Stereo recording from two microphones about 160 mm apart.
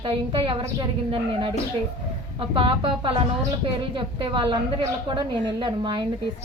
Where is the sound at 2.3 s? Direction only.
30° right (ahead or behind).